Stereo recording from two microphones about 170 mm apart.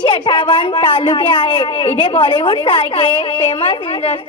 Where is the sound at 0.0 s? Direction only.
25° left (ahead or behind).